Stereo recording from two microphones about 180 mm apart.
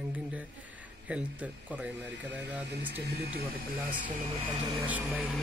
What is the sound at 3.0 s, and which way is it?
Speech, 60° right (ahead or behind).